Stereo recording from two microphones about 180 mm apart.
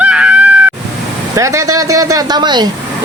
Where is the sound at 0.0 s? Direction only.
5° right (ahead or behind).